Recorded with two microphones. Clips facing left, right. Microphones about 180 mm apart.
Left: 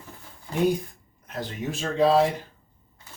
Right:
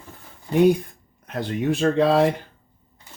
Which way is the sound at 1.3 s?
60° right (ahead or behind).